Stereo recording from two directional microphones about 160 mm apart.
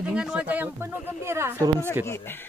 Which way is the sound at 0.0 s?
5° right (ahead or behind).